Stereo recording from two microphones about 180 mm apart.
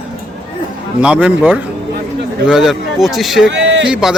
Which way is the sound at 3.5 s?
90° right.